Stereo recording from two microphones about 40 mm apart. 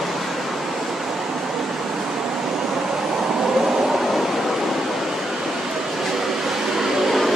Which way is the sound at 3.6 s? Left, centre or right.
Centre.